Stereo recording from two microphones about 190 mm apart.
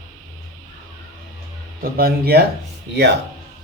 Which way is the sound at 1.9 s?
55° right (ahead or behind).